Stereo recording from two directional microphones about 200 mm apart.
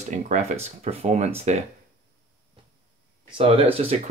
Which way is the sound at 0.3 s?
35° right (ahead or behind).